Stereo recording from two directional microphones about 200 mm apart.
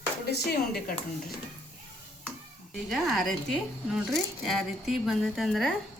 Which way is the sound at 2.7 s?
Centre (ahead or behind).